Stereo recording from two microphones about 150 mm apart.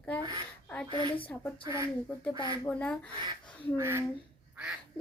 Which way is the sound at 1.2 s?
10° left (ahead or behind).